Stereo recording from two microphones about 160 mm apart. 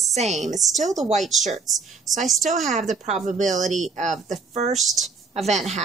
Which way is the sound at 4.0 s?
50° right (ahead or behind).